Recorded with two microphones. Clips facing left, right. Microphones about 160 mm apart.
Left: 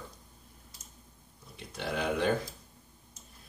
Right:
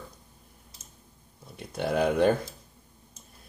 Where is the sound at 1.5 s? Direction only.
45° right (ahead or behind).